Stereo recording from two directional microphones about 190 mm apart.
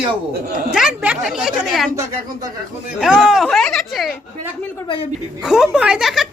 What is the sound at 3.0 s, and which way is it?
A woman's voice, 5° right (ahead or behind).